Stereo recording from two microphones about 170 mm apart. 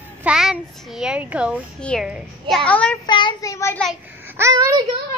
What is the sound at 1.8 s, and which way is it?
A woman's voice, 5° left (ahead or behind).